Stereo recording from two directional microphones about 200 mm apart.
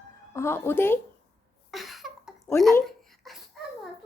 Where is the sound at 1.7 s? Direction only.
Centre (ahead or behind).